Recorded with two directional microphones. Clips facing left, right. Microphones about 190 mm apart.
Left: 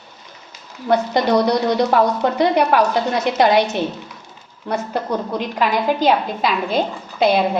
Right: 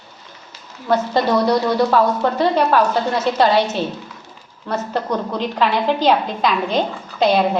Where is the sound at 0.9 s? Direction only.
15° left (ahead or behind).